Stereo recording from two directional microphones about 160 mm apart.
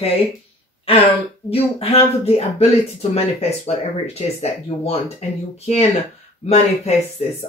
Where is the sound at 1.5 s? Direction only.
40° left (ahead or behind).